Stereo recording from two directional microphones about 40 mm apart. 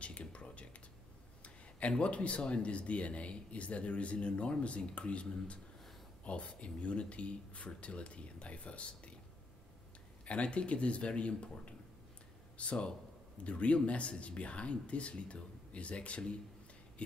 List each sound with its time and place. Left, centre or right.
0.0 s a sound: left
1.4 s speech: left
10.2 s speech: left